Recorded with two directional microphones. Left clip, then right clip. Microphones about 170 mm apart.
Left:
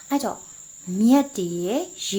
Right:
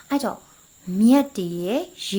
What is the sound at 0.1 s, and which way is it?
Speech, 20° right (ahead or behind).